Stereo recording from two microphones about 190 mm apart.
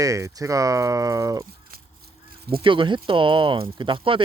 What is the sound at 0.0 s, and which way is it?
Speech, 15° right (ahead or behind).